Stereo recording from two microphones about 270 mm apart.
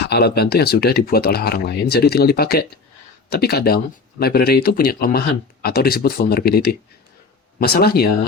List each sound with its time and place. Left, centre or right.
0.0 s speech: left